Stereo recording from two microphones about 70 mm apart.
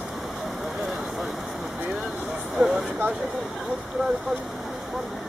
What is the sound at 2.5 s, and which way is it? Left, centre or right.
Vehicle, centre.